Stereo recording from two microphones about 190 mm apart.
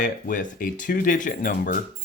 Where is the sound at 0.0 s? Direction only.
40° left (ahead or behind).